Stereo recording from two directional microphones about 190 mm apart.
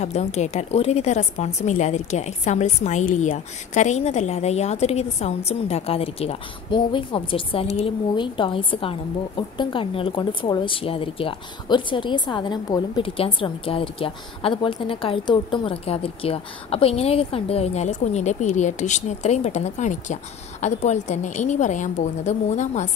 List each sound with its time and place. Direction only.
0.0 s a woman's voice: 35° left (ahead or behind)